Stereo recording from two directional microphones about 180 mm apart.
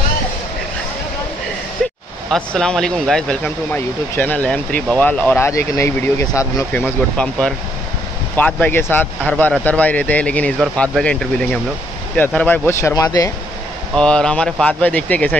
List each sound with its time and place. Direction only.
1.8 s a sound: centre (ahead or behind)
2.3 s speech: 5° left (ahead or behind); by 13.3 s 20° left (ahead or behind)
13.9 s speech: 5° left (ahead or behind)